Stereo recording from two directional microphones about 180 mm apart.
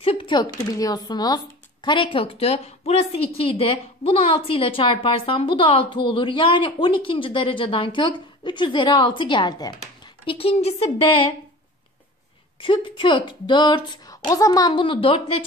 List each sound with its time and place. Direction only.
0.0 s a woman's voice: 30° left (ahead or behind)
12.6 s a woman's voice: 30° left (ahead or behind)